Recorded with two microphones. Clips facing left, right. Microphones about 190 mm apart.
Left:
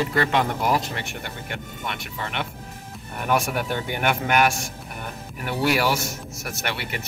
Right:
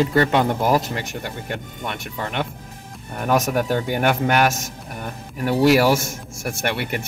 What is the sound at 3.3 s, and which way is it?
Speech, 40° right (ahead or behind).